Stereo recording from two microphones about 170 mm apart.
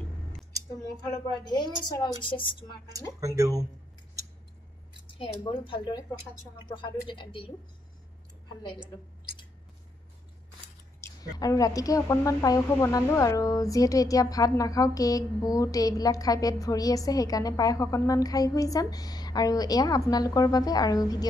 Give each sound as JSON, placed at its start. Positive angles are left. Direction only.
{"t": 1.0, "sound": "speech", "side_deg": 25}
{"t": 2.9, "sound": "speech", "side_deg": -20}
{"t": 5.0, "sound": "speech", "side_deg": 30}
{"t": 11.0, "sound": "speech", "side_deg": 20}